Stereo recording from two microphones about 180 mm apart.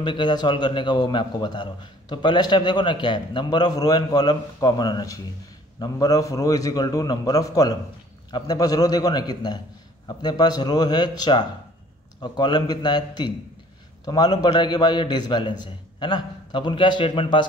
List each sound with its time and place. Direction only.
0.0 s a man's voice: 25° left (ahead or behind)